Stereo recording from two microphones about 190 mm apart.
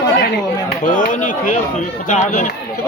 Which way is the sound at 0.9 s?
45° left (ahead or behind).